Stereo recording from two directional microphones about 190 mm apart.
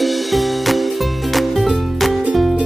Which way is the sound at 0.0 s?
Centre (ahead or behind).